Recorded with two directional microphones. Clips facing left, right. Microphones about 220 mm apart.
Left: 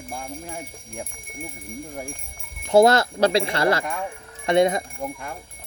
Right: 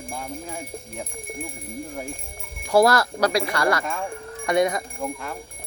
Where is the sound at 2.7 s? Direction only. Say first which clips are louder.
Left 2 dB; 25° left (ahead or behind).